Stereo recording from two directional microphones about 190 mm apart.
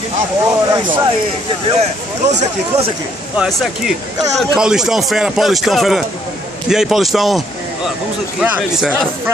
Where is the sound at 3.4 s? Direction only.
Centre (ahead or behind).